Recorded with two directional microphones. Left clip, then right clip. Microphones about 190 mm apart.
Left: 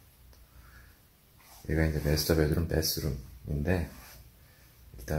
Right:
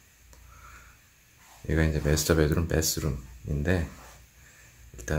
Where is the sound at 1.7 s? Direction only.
25° right (ahead or behind).